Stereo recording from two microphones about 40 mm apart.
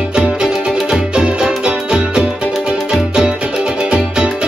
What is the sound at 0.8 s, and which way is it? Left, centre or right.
Music, right.